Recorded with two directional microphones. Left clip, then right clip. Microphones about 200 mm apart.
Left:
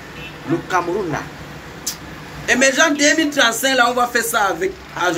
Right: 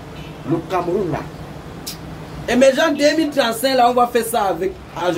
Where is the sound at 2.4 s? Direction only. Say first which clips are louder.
Even; 20° right (ahead or behind).